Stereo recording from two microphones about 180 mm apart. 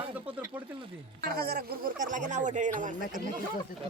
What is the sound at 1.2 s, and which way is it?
Speech, 60° right (ahead or behind).